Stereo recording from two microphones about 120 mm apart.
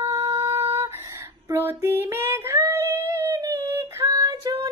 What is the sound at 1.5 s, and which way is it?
Female singing, 20° right (ahead or behind).